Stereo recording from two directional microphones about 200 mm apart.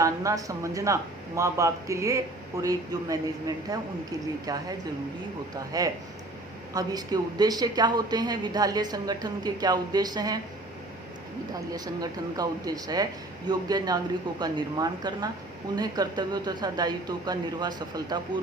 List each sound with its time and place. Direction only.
0.0 s a man's voice: 15° right (ahead or behind)
5.7 s speech: 20° right (ahead or behind)
11.5 s speech: 20° right (ahead or behind)